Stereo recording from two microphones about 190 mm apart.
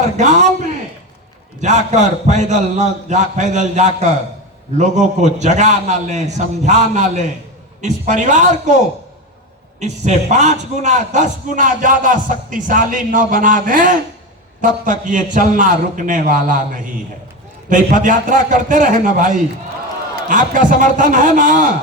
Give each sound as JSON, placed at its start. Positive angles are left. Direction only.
{"t": 0.2, "sound": "a man's voice", "side_deg": -40}
{"t": 1.6, "sound": "a man's voice", "side_deg": -40}
{"t": 9.8, "sound": "a man's voice", "side_deg": -35}
{"t": 17.7, "sound": "a man's voice", "side_deg": -45}